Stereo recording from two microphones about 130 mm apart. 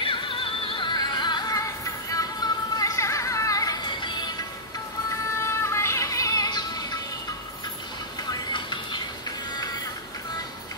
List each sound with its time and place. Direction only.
0.0 s music: 40° left (ahead or behind)
5.1 s music: 20° left (ahead or behind)
8.3 s music: 35° left (ahead or behind)